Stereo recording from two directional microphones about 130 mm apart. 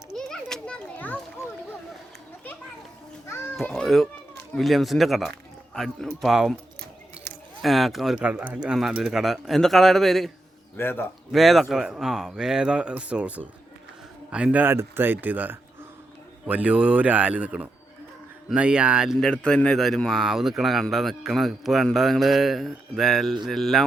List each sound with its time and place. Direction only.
0.2 s children playing: 5° left (ahead or behind)
3.6 s a man's voice: centre (ahead or behind)
7.6 s a man's voice: centre (ahead or behind)
10.8 s a man's voice: 15° left (ahead or behind)
11.3 s a man's voice: centre (ahead or behind)
19.2 s a man's voice: 5° left (ahead or behind)